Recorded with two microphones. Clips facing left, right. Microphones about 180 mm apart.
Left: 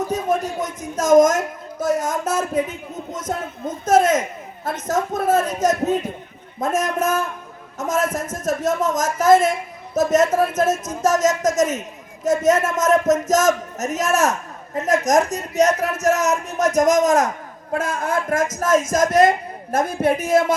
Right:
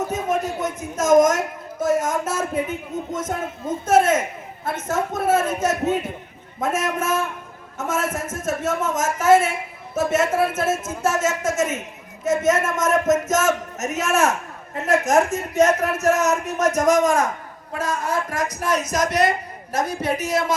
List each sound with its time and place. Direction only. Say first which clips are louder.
1.8 s a man's voice: even; 35° left (ahead or behind)
17.7 s a man's voice: left 2 dB; 55° left (ahead or behind)